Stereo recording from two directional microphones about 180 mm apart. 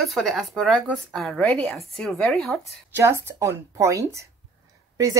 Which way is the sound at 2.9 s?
15° right (ahead or behind).